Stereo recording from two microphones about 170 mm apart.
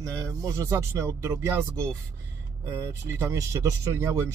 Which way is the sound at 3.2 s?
15° right (ahead or behind).